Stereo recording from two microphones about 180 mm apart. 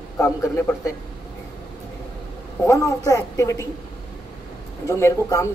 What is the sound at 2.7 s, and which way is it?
Speech, 20° left (ahead or behind).